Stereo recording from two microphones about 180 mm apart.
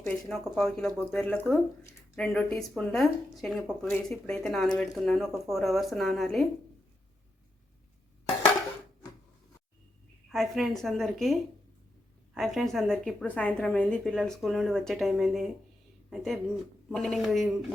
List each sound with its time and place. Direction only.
0.3 s a woman's voice: centre (ahead or behind)
10.2 s a woman's voice: centre (ahead or behind)